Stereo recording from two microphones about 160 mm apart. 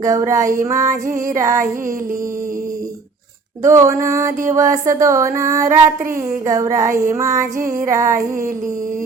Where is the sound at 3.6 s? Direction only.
20° right (ahead or behind).